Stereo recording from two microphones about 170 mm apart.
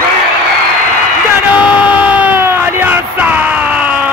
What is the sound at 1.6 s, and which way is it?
Crowd, 10° right (ahead or behind).